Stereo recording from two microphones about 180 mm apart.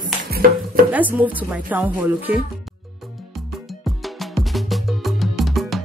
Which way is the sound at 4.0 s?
Centre (ahead or behind).